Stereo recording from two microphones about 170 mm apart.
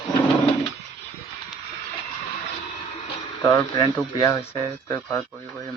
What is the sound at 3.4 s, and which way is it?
Speech, 20° left (ahead or behind).